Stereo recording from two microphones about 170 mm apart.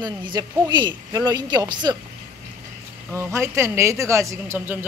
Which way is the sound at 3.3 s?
15° right (ahead or behind).